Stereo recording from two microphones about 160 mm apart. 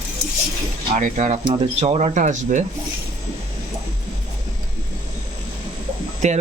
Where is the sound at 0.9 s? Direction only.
50° right (ahead or behind).